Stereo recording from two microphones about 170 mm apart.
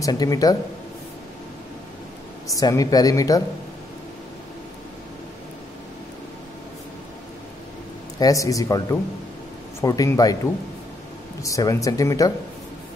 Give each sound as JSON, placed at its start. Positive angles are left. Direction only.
{"t": 0.0, "sound": "speech", "side_deg": 20}
{"t": 2.5, "sound": "speech", "side_deg": 20}
{"t": 8.2, "sound": "speech", "side_deg": 20}